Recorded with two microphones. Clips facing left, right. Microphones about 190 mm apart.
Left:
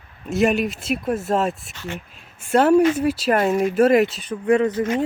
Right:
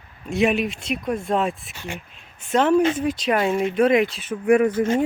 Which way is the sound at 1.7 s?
15° right (ahead or behind).